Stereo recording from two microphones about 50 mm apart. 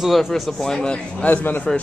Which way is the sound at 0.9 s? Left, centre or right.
Left.